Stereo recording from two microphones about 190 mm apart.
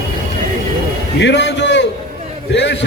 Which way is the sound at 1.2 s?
65° left (ahead or behind).